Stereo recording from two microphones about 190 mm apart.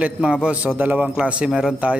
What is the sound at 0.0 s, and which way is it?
A man's voice, 5° right (ahead or behind).